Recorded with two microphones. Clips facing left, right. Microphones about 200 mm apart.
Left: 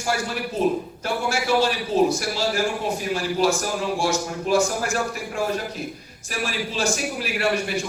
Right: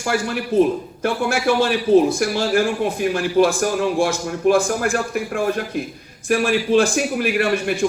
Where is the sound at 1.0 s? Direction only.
55° right (ahead or behind).